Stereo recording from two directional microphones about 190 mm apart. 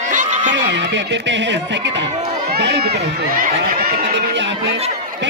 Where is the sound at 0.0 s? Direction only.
40° right (ahead or behind).